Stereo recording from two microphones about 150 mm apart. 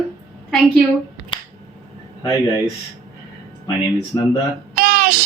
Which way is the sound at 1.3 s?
30° left (ahead or behind).